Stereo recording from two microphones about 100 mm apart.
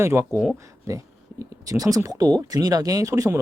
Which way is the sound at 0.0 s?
25° right (ahead or behind).